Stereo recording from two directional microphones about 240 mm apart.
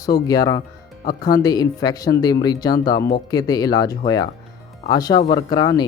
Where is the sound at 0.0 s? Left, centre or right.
Centre.